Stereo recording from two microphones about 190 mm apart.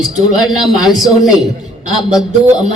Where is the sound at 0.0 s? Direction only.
Centre (ahead or behind).